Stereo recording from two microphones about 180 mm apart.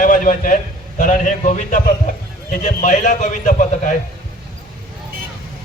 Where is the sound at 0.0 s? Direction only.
45° left (ahead or behind).